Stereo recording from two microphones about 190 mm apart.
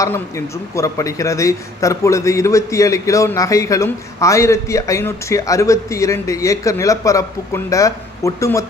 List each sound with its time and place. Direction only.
0.0 s a man's voice: 15° left (ahead or behind)